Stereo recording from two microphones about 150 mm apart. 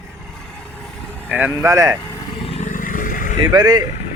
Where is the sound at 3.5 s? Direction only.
25° right (ahead or behind).